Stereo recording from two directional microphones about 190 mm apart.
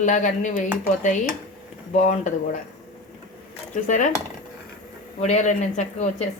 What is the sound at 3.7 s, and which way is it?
Speech, 40° left (ahead or behind).